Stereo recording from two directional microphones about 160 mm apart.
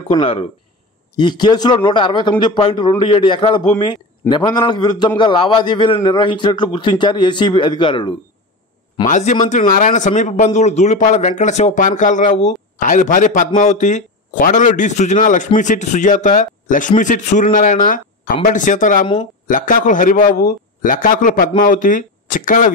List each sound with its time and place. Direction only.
0.1 s a man's voice: 35° left (ahead or behind)
9.0 s a man's voice: 50° left (ahead or behind)